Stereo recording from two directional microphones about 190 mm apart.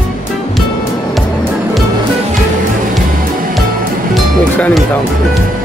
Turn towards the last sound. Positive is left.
turn(degrees=5)  # may be behind; listen again after turning